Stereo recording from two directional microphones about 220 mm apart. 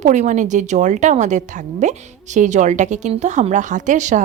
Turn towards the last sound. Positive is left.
turn(degrees=-35)  # may be behind; listen again after turning